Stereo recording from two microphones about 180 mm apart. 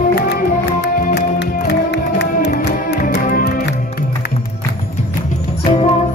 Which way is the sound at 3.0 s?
45° left (ahead or behind).